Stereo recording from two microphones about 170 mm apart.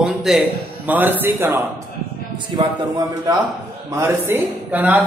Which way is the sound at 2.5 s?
25° right (ahead or behind).